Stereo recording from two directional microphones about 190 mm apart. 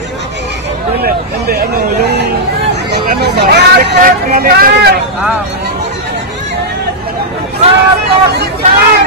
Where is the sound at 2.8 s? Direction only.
65° right (ahead or behind).